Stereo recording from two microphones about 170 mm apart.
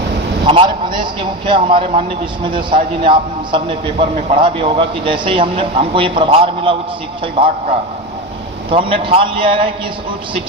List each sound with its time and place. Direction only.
0.4 s a man's voice: 30° right (ahead or behind)
8.7 s a man's voice: 30° right (ahead or behind)